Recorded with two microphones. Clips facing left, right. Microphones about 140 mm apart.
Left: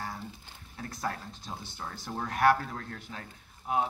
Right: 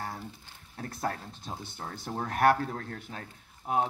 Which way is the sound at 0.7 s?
50° right (ahead or behind).